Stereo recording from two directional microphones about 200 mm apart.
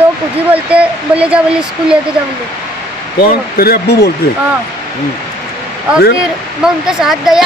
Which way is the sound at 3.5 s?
50° left (ahead or behind).